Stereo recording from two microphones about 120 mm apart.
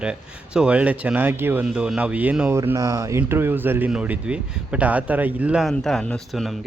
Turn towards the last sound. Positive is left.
turn(degrees=0)  # may be behind; listen again after turning